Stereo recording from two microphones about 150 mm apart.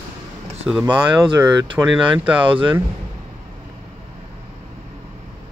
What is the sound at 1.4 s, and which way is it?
Speech, 25° right (ahead or behind).